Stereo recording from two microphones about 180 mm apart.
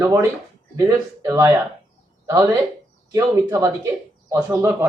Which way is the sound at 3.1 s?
20° right (ahead or behind).